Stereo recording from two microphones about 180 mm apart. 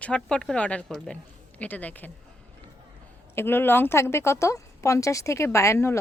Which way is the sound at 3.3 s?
10° left (ahead or behind).